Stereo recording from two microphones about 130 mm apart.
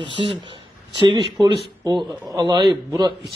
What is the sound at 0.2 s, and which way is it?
A man's voice, 45° right (ahead or behind).